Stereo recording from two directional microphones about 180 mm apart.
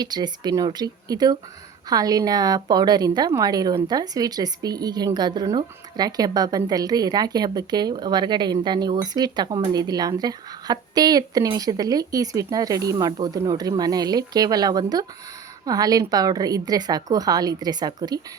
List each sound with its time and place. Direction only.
0.0 s speech: 20° right (ahead or behind)